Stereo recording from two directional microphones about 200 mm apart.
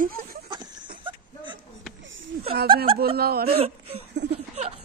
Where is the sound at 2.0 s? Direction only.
70° right (ahead or behind).